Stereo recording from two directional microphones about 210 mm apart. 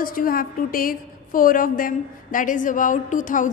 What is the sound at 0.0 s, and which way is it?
A woman's voice, 40° left (ahead or behind).